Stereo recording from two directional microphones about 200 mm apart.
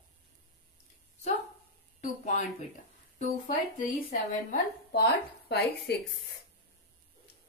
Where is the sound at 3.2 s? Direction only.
40° left (ahead or behind).